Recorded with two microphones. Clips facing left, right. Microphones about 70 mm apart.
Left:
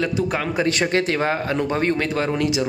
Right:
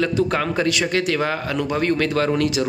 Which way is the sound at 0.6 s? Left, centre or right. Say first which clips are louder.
Even; left.